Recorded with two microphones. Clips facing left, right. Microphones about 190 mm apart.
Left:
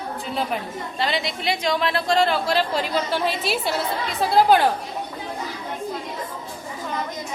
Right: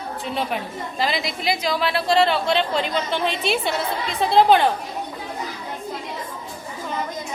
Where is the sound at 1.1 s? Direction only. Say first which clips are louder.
Even; 35° left (ahead or behind).